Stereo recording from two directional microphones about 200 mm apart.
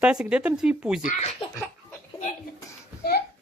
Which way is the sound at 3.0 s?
50° left (ahead or behind).